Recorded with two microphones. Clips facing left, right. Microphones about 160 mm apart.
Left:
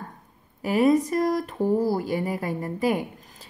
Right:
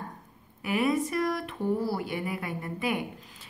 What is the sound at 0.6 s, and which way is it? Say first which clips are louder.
Speech: left 7 dB; 40° left (ahead or behind).